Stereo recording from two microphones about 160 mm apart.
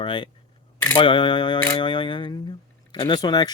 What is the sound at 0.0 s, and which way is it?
Speech, 30° left (ahead or behind).